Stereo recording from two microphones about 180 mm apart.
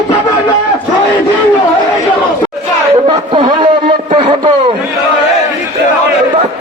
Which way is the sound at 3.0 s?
25° right (ahead or behind).